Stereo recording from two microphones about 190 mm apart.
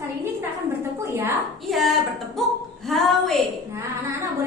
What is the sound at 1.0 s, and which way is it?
Speech, 10° right (ahead or behind).